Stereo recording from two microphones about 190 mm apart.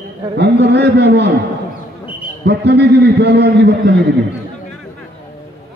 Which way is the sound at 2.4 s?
60° right (ahead or behind).